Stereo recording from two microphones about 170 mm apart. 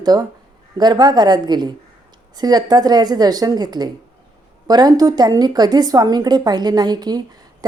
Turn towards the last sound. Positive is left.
turn(degrees=-25)  # may be behind; listen again after turning